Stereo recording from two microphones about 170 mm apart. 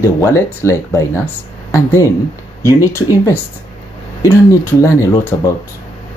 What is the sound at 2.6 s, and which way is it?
Speech, 15° left (ahead or behind).